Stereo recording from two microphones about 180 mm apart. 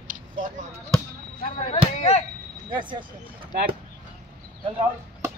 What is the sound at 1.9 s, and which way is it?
Speech, 35° left (ahead or behind).